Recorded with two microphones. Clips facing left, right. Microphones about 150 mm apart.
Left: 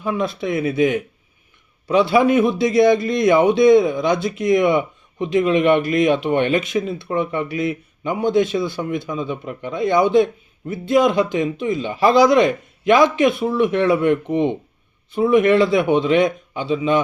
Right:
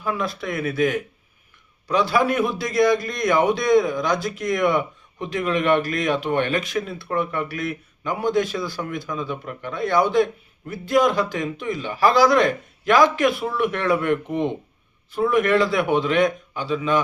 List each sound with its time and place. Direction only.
0.0 s a man's voice: 20° left (ahead or behind)
2.0 s a man's voice: 25° left (ahead or behind)
15.4 s a man's voice: 25° left (ahead or behind)